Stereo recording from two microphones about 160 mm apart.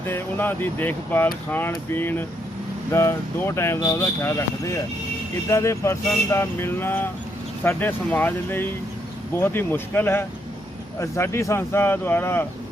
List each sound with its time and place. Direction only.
0.0 s speech: 10° left (ahead or behind)